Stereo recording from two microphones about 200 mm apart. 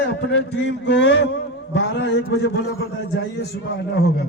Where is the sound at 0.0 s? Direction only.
60° left (ahead or behind).